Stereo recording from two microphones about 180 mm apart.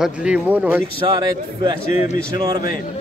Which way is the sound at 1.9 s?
45° left (ahead or behind).